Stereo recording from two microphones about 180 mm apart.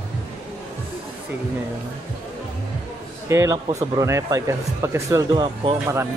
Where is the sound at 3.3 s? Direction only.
15° right (ahead or behind).